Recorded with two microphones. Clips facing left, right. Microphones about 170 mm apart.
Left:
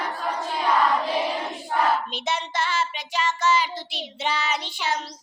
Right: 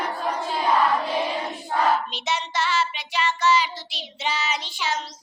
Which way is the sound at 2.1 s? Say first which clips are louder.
Even; 50° left (ahead or behind).